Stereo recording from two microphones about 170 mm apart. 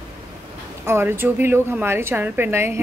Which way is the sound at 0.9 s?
15° right (ahead or behind).